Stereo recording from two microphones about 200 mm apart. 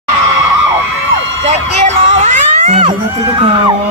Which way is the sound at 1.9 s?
35° right (ahead or behind).